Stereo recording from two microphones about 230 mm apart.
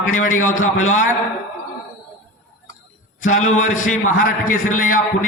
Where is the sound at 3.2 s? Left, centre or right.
Left.